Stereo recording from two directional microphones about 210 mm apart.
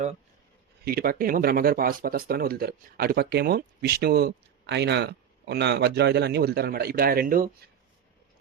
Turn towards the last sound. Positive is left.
turn(degrees=-45)  # may be behind; listen again after turning